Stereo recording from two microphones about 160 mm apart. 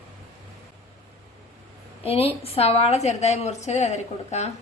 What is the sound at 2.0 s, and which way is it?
A woman's voice, 40° left (ahead or behind).